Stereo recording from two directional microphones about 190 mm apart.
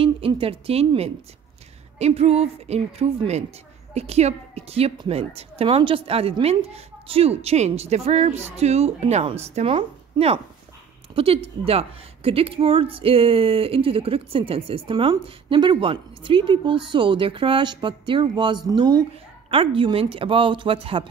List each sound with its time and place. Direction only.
0.0 s a woman's voice: 30° right (ahead or behind)